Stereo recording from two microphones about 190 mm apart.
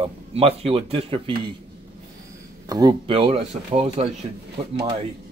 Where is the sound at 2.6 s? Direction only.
20° right (ahead or behind).